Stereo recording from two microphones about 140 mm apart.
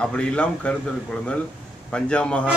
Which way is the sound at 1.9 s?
5° left (ahead or behind).